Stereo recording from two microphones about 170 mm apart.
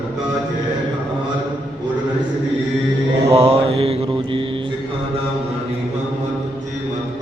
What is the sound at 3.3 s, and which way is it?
Mantra, 35° right (ahead or behind).